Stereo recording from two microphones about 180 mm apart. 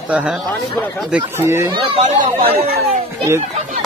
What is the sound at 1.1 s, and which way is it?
Speech, 10° right (ahead or behind).